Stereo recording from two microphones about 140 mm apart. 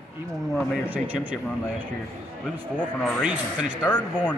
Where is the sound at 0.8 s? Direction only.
10° right (ahead or behind).